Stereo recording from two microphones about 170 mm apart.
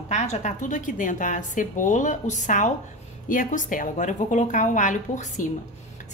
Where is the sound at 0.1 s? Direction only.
45° left (ahead or behind).